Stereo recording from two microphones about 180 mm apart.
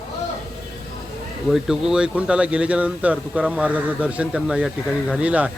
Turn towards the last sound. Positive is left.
turn(degrees=-10)  # may be behind; listen again after turning